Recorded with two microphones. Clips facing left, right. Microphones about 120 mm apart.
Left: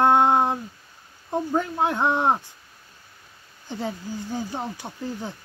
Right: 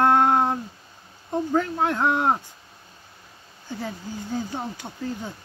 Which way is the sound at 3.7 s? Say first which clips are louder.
Left 2 dB; 20° left (ahead or behind).